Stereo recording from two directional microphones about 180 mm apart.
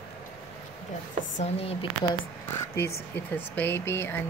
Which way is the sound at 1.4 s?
35° left (ahead or behind).